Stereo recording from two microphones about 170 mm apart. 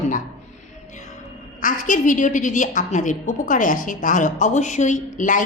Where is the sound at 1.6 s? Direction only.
50° left (ahead or behind).